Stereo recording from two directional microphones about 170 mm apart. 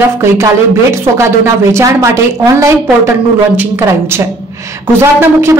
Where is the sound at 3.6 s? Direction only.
15° right (ahead or behind).